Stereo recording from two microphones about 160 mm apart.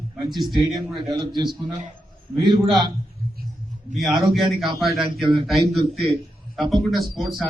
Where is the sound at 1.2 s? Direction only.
30° right (ahead or behind).